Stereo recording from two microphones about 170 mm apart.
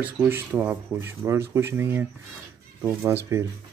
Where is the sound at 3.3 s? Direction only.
15° right (ahead or behind).